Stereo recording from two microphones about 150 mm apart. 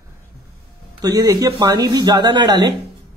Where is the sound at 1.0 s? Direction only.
25° right (ahead or behind).